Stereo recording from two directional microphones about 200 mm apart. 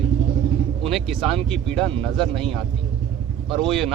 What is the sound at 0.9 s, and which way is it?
Speech, centre (ahead or behind).